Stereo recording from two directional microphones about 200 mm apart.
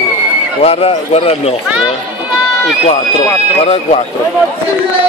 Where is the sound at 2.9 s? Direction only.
30° left (ahead or behind).